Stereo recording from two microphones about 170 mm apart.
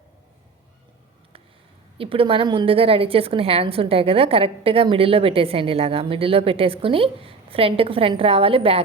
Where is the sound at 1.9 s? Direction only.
30° right (ahead or behind).